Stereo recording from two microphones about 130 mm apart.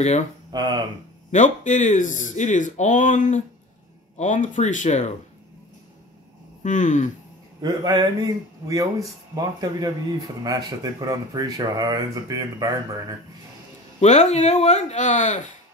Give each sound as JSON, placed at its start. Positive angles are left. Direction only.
{"t": 0.5, "sound": "speech", "side_deg": -30}
{"t": 1.3, "sound": "speech", "side_deg": 75}
{"t": 6.6, "sound": "speech", "side_deg": 75}
{"t": 7.6, "sound": "a man's voice", "side_deg": -35}
{"t": 13.9, "sound": "speech", "side_deg": 65}